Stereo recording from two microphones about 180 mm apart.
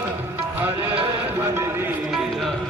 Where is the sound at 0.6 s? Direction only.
10° right (ahead or behind).